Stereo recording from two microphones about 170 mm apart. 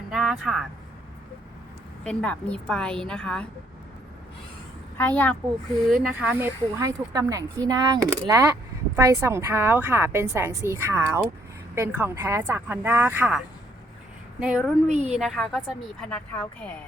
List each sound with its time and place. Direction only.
0.1 s a sound: centre (ahead or behind)
2.0 s a woman's voice: 5° left (ahead or behind)
4.9 s a woman's voice: 10° left (ahead or behind)
6.0 s a woman's voice: 10° right (ahead or behind)
14.8 s a woman's voice: 40° right (ahead or behind)
15.2 s a woman's voice: centre (ahead or behind)